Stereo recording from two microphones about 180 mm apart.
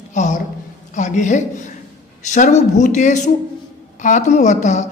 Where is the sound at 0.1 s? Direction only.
40° left (ahead or behind).